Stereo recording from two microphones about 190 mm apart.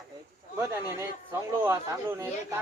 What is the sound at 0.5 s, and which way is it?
Speech, 15° right (ahead or behind).